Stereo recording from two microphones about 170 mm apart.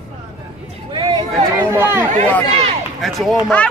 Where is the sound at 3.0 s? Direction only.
Centre (ahead or behind).